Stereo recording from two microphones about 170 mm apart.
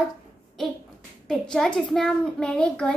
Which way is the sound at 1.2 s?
5° left (ahead or behind).